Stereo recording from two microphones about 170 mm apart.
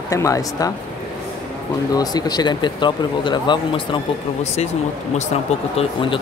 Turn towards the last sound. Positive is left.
turn(degrees=30)  # may be behind; listen again after turning